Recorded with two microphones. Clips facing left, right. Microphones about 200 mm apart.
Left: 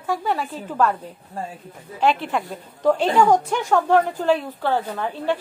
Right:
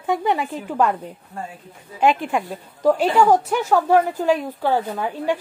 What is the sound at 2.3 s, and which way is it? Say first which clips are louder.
A woman's voice: right 2 dB; 5° right (ahead or behind).